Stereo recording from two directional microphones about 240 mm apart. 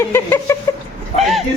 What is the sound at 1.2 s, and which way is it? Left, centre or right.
Speech, centre.